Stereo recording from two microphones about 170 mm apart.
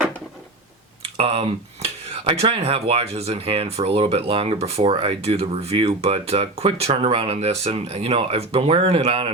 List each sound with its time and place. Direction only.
1.0 s speech: 35° right (ahead or behind)